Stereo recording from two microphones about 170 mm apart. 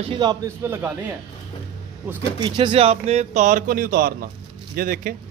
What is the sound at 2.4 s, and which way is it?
A man's voice, 30° right (ahead or behind).